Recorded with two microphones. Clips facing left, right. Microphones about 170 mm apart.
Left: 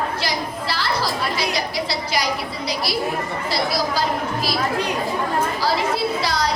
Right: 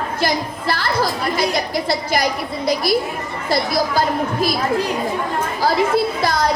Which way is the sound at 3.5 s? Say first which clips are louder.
Right 5 dB; 50° right (ahead or behind).